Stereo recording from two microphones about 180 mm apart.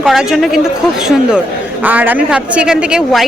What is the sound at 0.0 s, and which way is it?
A woman's voice, centre (ahead or behind).